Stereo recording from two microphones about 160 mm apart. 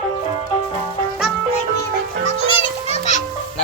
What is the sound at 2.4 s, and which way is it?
Children playing, 40° left (ahead or behind).